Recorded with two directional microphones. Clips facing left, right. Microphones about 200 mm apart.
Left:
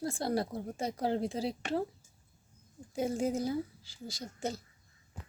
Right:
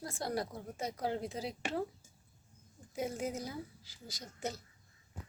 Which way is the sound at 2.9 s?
30° left (ahead or behind).